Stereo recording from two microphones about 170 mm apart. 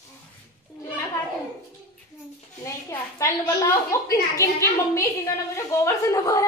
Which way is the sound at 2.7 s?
20° left (ahead or behind).